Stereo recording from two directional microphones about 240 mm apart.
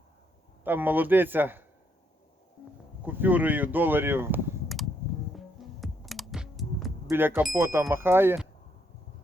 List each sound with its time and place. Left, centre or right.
0.6 s speech: centre
3.1 s speech: centre
5.3 s music: centre
7.1 s speech: centre